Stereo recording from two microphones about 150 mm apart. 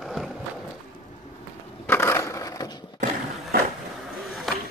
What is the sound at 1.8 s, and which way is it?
Crushing, 15° left (ahead or behind).